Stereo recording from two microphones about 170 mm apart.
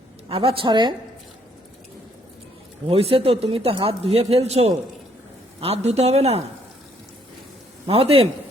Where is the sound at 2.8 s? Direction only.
35° right (ahead or behind).